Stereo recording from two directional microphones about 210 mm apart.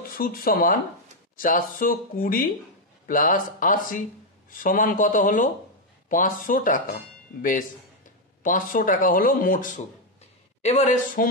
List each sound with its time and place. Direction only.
0.2 s speech: 45° left (ahead or behind)
8.4 s speech: 40° left (ahead or behind)